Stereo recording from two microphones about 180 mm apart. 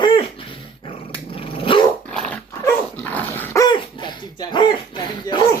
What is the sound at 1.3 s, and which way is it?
Dog, 30° left (ahead or behind).